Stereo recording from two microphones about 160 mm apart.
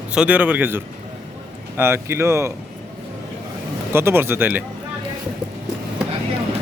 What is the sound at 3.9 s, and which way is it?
Speech, 15° right (ahead or behind).